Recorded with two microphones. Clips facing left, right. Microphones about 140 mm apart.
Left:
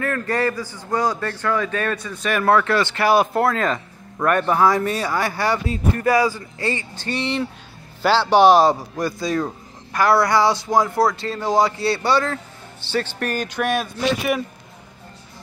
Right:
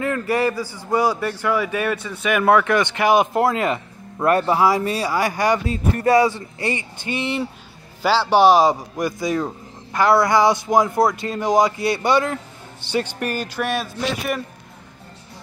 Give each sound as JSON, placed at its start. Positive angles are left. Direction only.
{"t": 0.0, "sound": "a man's voice", "side_deg": -15}
{"t": 4.2, "sound": "a man's voice", "side_deg": -30}
{"t": 4.5, "sound": "a man's voice", "side_deg": -10}